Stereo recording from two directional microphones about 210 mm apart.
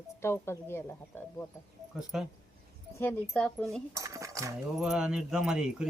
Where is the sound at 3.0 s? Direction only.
10° left (ahead or behind).